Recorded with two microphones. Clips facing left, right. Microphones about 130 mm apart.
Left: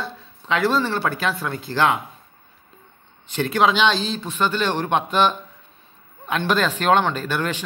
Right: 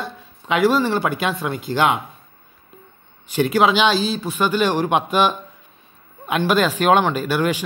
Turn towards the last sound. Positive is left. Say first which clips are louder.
# right 4 dB
turn(degrees=-10)  # may be behind; listen again after turning